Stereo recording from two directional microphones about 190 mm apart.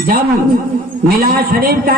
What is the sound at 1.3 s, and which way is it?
Speech, 50° right (ahead or behind).